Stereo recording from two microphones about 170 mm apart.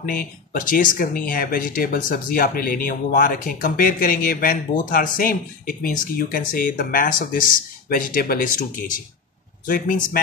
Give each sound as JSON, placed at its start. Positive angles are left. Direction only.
{"t": 0.0, "sound": "a man's voice", "side_deg": 55}